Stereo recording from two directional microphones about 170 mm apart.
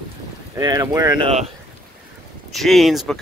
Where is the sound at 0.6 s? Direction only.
20° right (ahead or behind).